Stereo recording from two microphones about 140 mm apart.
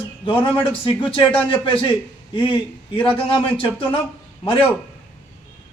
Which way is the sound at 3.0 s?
40° left (ahead or behind).